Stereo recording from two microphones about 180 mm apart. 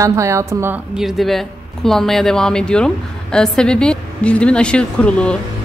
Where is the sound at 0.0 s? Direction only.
15° right (ahead or behind).